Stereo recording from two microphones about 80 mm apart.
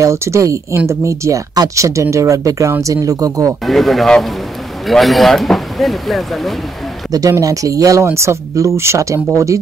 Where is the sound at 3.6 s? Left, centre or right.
Centre.